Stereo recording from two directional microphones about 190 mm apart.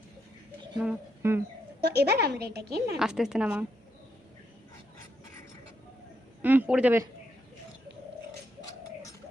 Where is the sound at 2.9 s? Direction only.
5° right (ahead or behind).